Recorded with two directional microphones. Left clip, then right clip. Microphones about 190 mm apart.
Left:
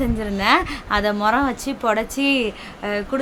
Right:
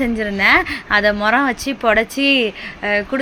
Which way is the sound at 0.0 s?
10° right (ahead or behind).